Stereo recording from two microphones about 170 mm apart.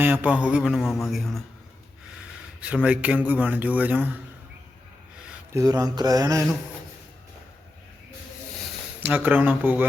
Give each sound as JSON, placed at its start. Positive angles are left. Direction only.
{"t": 0.0, "sound": "speech", "side_deg": -10}
{"t": 2.6, "sound": "a man's voice", "side_deg": -5}
{"t": 5.5, "sound": "mantra", "side_deg": -20}
{"t": 9.0, "sound": "a man's voice", "side_deg": -10}